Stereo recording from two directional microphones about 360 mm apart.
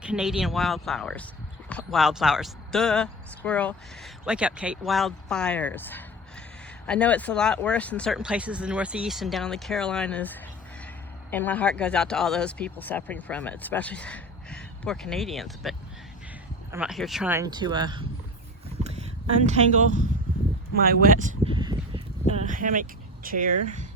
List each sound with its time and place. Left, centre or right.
0.0 s speech: centre
16.7 s speech: centre
18.8 s a sound: centre
20.7 s speech: right